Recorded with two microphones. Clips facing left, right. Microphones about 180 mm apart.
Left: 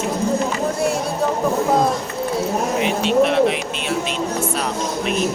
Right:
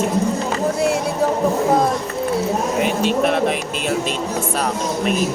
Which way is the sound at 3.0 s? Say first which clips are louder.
Left 5 dB; 45° right (ahead or behind).